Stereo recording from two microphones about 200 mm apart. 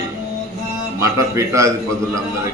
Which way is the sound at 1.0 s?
15° right (ahead or behind).